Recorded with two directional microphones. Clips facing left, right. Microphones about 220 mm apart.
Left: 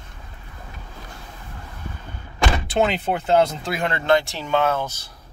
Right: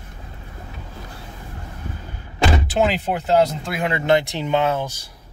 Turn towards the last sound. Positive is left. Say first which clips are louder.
# right 1 dB
turn(degrees=-10)  # may be behind; listen again after turning